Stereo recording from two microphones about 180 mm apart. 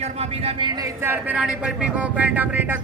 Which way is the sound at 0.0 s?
35° right (ahead or behind).